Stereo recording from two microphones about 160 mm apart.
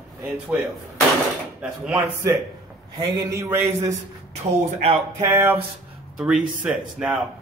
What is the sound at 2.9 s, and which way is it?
Speech, 20° right (ahead or behind).